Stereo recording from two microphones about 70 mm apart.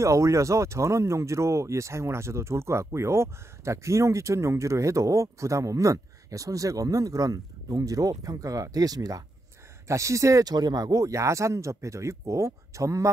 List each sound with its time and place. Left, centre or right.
0.0 s speech: right
9.8 s speech: right
10.4 s speech: right